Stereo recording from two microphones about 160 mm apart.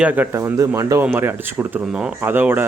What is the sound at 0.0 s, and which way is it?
Speech, 10° right (ahead or behind).